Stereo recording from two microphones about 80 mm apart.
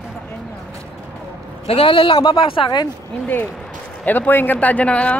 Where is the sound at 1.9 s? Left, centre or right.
Left.